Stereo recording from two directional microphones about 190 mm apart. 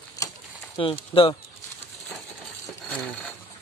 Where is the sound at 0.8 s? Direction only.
30° left (ahead or behind).